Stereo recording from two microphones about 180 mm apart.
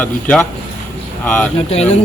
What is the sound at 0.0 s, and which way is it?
A man's voice, 5° left (ahead or behind).